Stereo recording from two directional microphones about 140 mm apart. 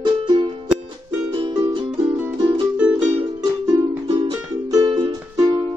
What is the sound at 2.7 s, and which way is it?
Music, 5° right (ahead or behind).